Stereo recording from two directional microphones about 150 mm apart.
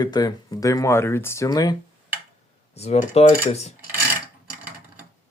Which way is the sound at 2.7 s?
45° left (ahead or behind).